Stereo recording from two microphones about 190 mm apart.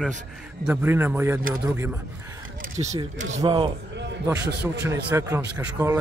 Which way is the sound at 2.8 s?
30° right (ahead or behind).